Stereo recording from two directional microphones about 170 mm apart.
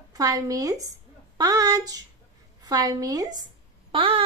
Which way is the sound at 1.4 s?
20° right (ahead or behind).